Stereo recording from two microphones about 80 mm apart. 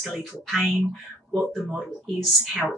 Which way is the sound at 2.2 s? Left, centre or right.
Centre.